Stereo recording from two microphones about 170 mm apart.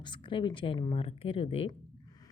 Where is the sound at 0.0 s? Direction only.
30° left (ahead or behind).